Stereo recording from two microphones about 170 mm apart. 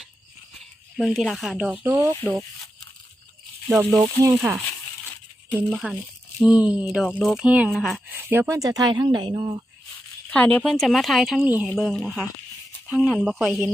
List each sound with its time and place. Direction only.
0.9 s speech: centre (ahead or behind)
3.7 s speech: 15° right (ahead or behind)
5.7 s speech: centre (ahead or behind)
8.1 s speech: 15° right (ahead or behind)
10.2 s speech: 10° left (ahead or behind)